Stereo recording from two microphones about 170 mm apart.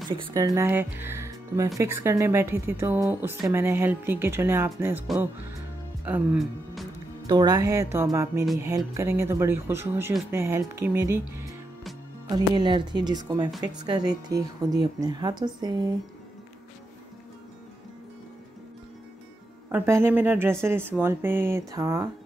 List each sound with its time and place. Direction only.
0.1 s speech: 25° right (ahead or behind)
5.0 s speech: 5° right (ahead or behind)
6.3 s speech: centre (ahead or behind)
7.2 s speech: 25° right (ahead or behind)
12.3 s speech: 25° right (ahead or behind)
19.7 s speech: 10° right (ahead or behind)